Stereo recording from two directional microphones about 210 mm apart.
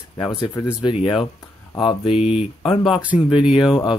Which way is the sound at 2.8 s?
5° right (ahead or behind).